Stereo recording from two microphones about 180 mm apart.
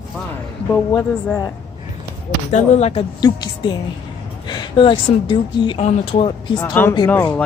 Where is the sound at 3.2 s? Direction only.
25° left (ahead or behind).